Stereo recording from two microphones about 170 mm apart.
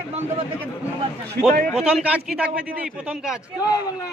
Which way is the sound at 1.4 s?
60° right (ahead or behind).